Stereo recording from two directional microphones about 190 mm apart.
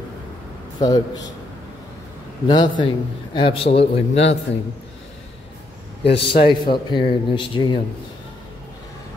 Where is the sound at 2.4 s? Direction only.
25° left (ahead or behind).